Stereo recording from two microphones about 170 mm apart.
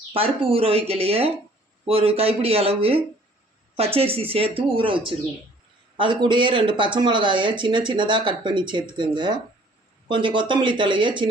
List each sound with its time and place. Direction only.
0.1 s speech: 35° right (ahead or behind)